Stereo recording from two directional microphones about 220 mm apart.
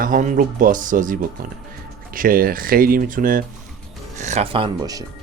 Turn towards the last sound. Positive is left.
turn(degrees=-20)  # may be behind; listen again after turning